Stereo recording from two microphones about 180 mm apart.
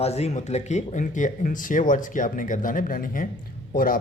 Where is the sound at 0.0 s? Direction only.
35° left (ahead or behind).